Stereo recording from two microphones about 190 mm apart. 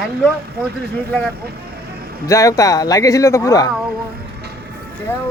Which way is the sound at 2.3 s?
15° left (ahead or behind).